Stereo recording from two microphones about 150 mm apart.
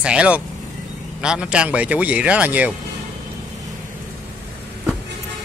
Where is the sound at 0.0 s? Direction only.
5° right (ahead or behind).